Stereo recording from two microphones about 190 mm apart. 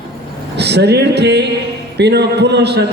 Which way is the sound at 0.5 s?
60° right (ahead or behind).